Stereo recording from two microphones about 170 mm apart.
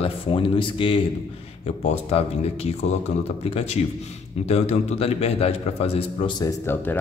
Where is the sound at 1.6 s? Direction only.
40° left (ahead or behind).